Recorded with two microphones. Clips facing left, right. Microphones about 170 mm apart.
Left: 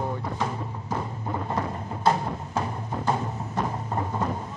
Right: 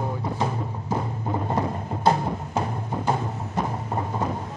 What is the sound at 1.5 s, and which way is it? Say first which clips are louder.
Music: right 3 dB; 20° right (ahead or behind).